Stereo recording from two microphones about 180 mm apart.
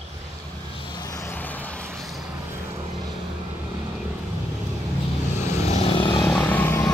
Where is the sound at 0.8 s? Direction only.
25° left (ahead or behind); by 2.2 s centre (ahead or behind).